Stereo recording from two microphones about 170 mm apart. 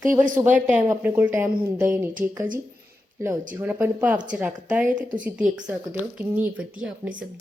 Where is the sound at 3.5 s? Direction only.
10° right (ahead or behind).